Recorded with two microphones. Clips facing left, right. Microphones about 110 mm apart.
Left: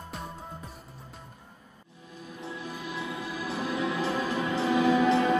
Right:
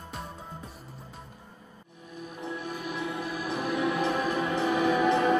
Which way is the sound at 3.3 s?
15° right (ahead or behind).